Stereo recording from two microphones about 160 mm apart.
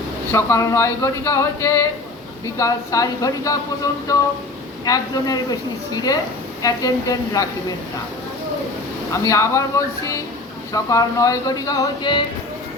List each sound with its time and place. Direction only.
0.3 s speech: 15° left (ahead or behind)
4.9 s speech: 25° left (ahead or behind)
9.1 s speech: 20° left (ahead or behind)